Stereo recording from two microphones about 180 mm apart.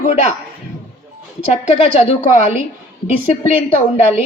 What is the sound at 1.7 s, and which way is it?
Speech, 35° left (ahead or behind).